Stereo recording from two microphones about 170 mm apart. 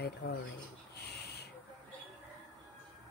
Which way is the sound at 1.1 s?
75° left (ahead or behind).